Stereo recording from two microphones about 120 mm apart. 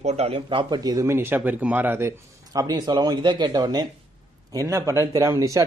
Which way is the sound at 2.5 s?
35° right (ahead or behind).